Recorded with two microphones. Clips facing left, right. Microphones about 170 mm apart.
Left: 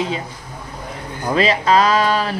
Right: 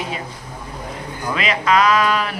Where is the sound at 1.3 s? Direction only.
30° left (ahead or behind).